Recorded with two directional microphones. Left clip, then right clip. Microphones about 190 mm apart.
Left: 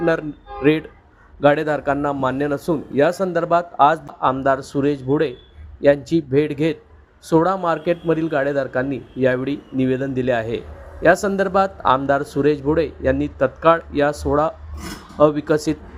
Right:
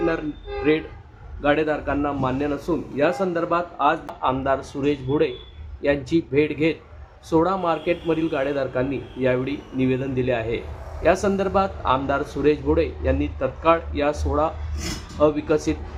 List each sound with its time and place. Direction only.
0.6 s a man's voice: 35° left (ahead or behind)